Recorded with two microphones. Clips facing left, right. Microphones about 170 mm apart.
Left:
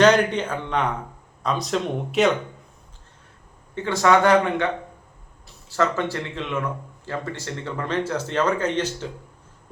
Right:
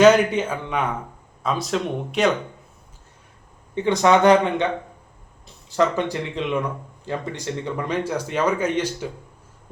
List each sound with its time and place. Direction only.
0.0 s speech: 5° right (ahead or behind)
3.8 s speech: 20° right (ahead or behind)